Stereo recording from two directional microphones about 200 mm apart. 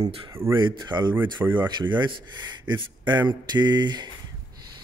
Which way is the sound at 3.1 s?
20° right (ahead or behind).